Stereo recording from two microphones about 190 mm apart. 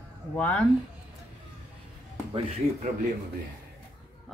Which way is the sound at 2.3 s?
30° right (ahead or behind).